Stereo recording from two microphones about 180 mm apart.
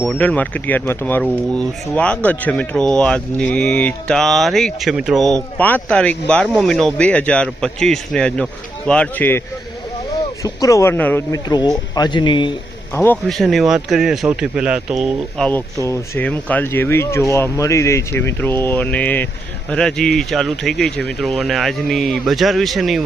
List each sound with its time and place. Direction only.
0.0 s speech: 5° left (ahead or behind)
10.4 s speech: 20° left (ahead or behind)
12.9 s a man's voice: 15° left (ahead or behind)
13.2 s speech: centre (ahead or behind)
15.4 s speech: 15° left (ahead or behind)